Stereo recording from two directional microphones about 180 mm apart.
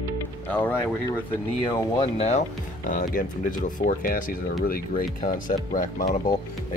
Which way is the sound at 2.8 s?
50° left (ahead or behind).